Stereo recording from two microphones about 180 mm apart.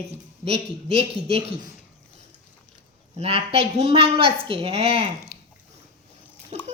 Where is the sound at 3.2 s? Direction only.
35° right (ahead or behind).